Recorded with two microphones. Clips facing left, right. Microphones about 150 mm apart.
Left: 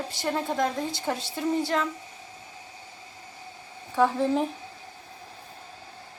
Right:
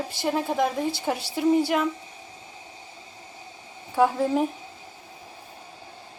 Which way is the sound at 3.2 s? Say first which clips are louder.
Even; 20° right (ahead or behind).